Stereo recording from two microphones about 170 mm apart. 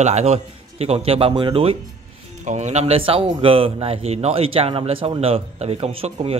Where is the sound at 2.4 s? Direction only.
45° right (ahead or behind).